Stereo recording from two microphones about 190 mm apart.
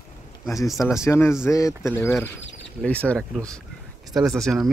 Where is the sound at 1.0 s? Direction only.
15° left (ahead or behind).